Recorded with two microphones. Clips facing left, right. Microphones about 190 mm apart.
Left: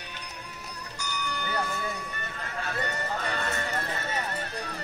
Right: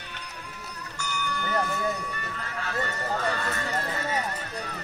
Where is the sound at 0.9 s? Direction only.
15° left (ahead or behind).